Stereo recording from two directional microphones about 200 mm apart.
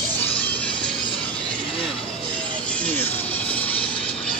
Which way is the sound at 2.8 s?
10° left (ahead or behind).